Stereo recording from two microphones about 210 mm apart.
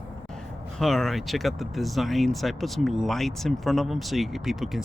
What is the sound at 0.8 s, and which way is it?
Speech, centre (ahead or behind).